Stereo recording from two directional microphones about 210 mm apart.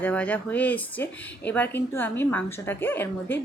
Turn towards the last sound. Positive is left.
turn(degrees=10)  # may be behind; listen again after turning